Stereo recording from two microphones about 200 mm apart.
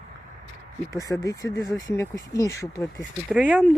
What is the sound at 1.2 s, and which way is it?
Speech, 15° left (ahead or behind).